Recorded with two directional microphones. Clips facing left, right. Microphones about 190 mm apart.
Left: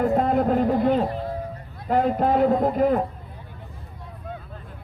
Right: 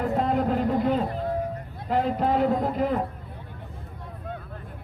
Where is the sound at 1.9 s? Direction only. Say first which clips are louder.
Left 3 dB; 50° left (ahead or behind).